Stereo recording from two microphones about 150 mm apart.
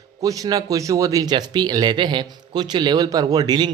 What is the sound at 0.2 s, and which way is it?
A man's voice, 25° right (ahead or behind).